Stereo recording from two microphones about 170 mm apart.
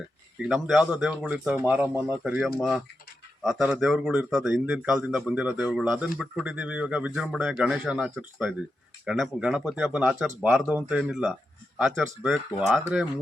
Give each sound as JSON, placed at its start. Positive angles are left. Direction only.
{"t": 0.4, "sound": "speech", "side_deg": -5}